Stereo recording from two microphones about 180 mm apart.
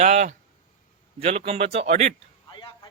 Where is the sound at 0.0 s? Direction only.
40° right (ahead or behind).